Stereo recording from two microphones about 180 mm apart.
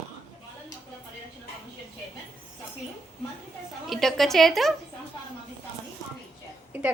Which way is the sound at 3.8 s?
Centre (ahead or behind).